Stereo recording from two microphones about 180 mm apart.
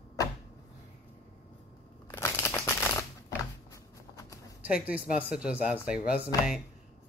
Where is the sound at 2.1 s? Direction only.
15° left (ahead or behind).